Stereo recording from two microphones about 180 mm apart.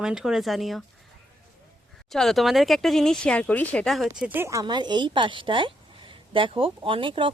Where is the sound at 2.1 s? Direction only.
Centre (ahead or behind).